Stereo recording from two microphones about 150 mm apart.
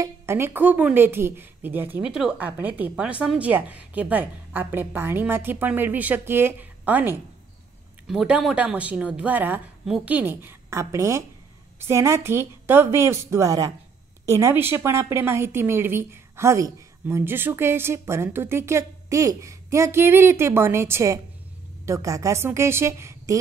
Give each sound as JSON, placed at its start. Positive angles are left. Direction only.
{"t": 0.0, "sound": "a woman's voice", "side_deg": -15}